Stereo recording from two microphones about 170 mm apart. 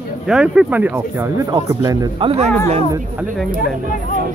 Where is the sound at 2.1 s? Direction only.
35° right (ahead or behind).